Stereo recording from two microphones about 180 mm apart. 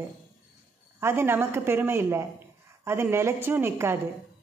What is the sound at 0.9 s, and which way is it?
A woman's voice, 15° right (ahead or behind).